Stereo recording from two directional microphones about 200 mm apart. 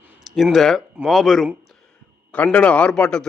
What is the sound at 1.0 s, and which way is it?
A man's voice, centre (ahead or behind).